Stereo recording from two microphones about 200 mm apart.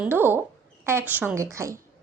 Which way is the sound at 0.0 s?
10° right (ahead or behind).